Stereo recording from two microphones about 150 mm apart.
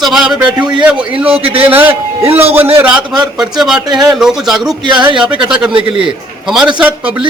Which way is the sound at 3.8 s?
30° right (ahead or behind).